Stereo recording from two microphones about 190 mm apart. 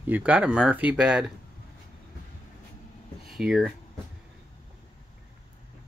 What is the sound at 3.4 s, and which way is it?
Speech, centre (ahead or behind).